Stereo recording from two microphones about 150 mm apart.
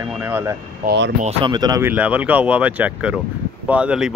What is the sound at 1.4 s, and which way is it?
Speech, 25° right (ahead or behind).